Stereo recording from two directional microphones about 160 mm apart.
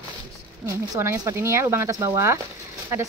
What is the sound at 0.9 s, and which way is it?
Speech, 15° right (ahead or behind).